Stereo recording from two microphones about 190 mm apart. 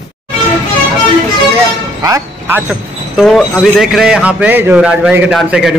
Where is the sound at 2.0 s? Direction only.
15° right (ahead or behind).